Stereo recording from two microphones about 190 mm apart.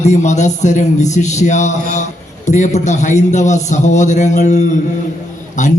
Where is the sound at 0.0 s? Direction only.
35° left (ahead or behind).